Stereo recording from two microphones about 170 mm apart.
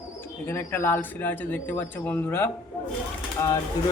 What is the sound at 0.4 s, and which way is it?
Speech, 15° left (ahead or behind).